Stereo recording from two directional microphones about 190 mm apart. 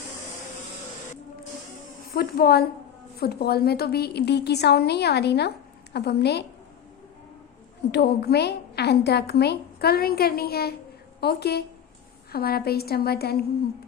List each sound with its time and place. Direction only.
2.1 s a woman's voice: 50° left (ahead or behind)
7.9 s a woman's voice: 60° left (ahead or behind)